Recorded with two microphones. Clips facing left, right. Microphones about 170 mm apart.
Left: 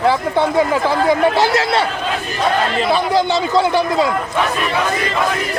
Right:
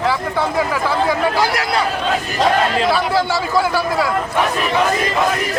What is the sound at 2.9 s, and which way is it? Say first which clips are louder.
A man's voice: left 2 dB; 20° left (ahead or behind).